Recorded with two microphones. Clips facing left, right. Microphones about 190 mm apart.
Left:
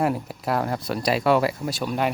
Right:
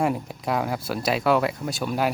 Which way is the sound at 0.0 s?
Centre (ahead or behind).